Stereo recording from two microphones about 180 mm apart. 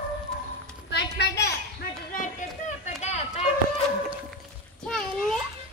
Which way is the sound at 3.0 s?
40° left (ahead or behind).